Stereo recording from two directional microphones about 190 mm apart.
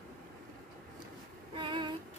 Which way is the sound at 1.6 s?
25° right (ahead or behind).